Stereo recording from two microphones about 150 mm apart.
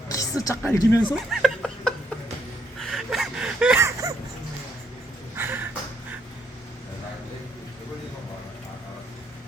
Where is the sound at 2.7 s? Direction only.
Centre (ahead or behind).